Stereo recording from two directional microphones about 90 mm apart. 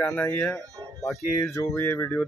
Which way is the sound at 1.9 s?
20° left (ahead or behind).